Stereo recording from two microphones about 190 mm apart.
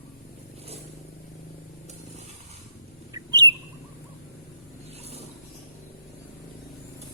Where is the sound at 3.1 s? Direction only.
20° right (ahead or behind).